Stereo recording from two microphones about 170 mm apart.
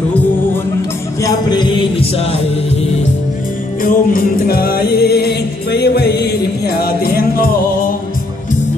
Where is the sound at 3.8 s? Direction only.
55° left (ahead or behind).